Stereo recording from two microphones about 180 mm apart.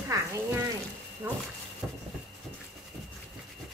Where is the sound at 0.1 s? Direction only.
20° right (ahead or behind).